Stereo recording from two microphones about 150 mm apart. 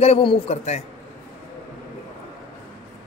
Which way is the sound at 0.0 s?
40° left (ahead or behind).